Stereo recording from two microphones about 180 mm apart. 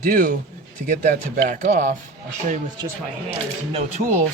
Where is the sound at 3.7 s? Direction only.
35° right (ahead or behind).